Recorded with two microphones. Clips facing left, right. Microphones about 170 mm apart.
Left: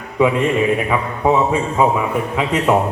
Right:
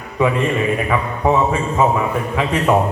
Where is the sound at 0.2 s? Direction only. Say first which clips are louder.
Left 2 dB; 15° left (ahead or behind).